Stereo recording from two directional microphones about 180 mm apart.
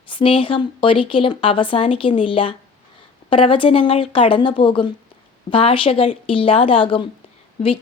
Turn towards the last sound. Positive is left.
turn(degrees=35)  # may be behind; listen again after turning